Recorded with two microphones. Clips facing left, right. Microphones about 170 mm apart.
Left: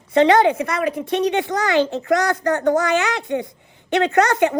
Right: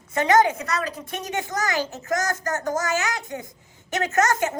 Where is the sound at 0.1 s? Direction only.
25° left (ahead or behind).